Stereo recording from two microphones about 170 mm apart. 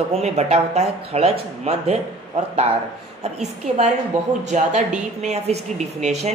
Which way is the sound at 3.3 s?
40° right (ahead or behind).